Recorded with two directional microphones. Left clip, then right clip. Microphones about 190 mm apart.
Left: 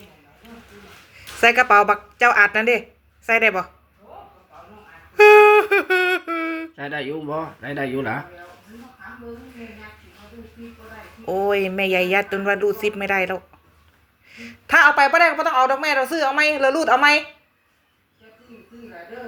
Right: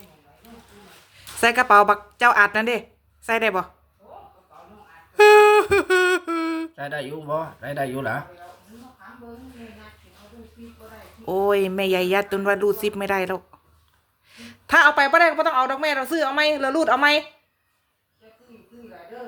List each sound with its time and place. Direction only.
1.4 s speech: 40° right (ahead or behind)
5.1 s a sound: 40° right (ahead or behind)
11.3 s speech: 40° right (ahead or behind)